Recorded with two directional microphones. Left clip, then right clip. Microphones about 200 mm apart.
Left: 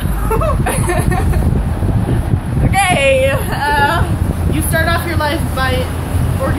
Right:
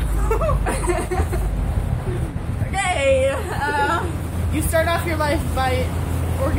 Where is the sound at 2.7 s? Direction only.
15° left (ahead or behind).